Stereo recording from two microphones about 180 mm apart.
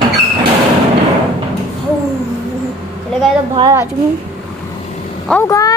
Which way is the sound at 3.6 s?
15° right (ahead or behind).